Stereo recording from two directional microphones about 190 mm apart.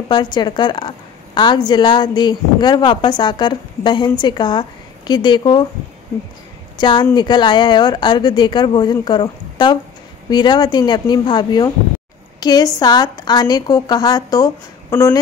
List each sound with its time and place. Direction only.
0.1 s a woman's voice: 25° left (ahead or behind)
6.8 s a woman's voice: 25° left (ahead or behind)